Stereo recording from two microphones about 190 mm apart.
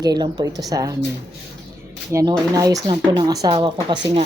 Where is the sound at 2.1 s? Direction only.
15° right (ahead or behind).